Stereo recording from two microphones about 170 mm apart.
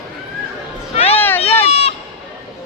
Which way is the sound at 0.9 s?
35° left (ahead or behind).